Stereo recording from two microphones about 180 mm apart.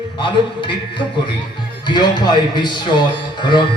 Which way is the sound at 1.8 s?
25° left (ahead or behind).